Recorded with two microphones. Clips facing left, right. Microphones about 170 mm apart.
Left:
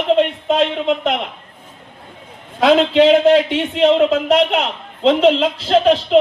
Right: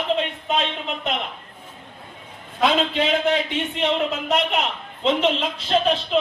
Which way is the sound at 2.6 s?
85° left.